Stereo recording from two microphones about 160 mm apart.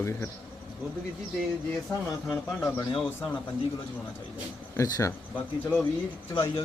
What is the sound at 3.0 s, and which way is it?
Speech, 10° left (ahead or behind).